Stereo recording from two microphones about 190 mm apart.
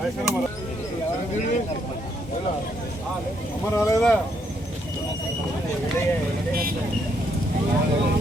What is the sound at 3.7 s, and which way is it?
Speech, 15° left (ahead or behind).